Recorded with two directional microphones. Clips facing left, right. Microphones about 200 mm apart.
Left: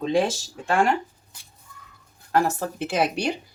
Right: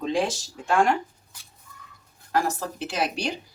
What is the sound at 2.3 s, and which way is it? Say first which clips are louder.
Speech: left 3 dB; 55° left (ahead or behind).